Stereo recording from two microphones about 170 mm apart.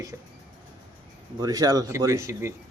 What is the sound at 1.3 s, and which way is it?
A man's voice, 20° right (ahead or behind).